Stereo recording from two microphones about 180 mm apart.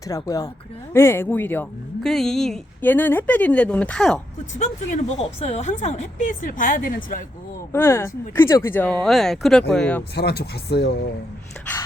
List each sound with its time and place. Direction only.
0.1 s speech: 20° left (ahead or behind); by 4.2 s 5° left (ahead or behind)
4.5 s speech: 40° left (ahead or behind)
7.7 s speech: 15° left (ahead or behind)
10.2 s speech: 65° left (ahead or behind)